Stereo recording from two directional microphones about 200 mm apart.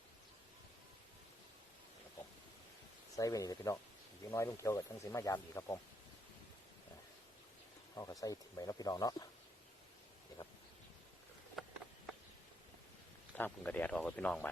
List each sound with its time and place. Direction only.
3.2 s speech: 15° left (ahead or behind)
8.2 s speech: 15° left (ahead or behind)
11.6 s a sound: centre (ahead or behind)
13.3 s speech: 5° left (ahead or behind)